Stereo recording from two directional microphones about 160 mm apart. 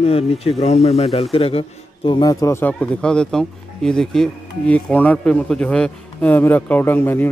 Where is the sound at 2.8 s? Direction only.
5° left (ahead or behind).